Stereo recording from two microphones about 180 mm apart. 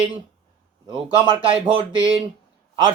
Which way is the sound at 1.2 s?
30° right (ahead or behind).